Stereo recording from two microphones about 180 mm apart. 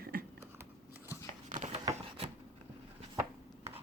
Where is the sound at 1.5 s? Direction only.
45° right (ahead or behind).